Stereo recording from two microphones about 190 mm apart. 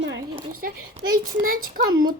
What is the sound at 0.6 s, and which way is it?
Speech, 50° right (ahead or behind).